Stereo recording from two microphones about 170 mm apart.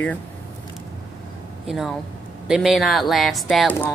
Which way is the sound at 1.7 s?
Centre (ahead or behind).